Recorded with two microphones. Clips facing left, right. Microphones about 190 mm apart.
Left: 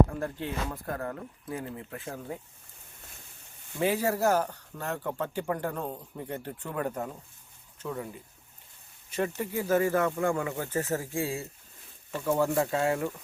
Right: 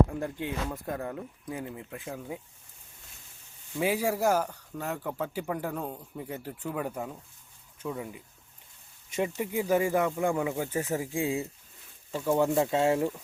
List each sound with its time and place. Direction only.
0.2 s speech: 15° right (ahead or behind)
3.8 s speech: 10° right (ahead or behind)